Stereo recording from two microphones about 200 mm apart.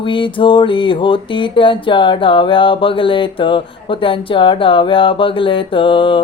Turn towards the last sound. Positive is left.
turn(degrees=25)  # may be behind; listen again after turning